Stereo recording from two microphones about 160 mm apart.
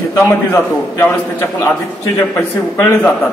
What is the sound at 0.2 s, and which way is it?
Speech, 15° left (ahead or behind).